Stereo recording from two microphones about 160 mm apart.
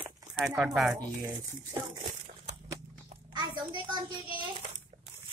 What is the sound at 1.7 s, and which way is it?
Speech, 25° right (ahead or behind).